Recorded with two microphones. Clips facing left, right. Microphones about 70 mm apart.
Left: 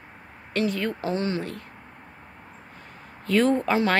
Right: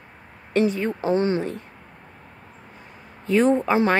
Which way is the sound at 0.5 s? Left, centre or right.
Right.